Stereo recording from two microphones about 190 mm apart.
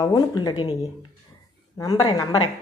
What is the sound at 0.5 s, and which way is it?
Speech, 30° left (ahead or behind).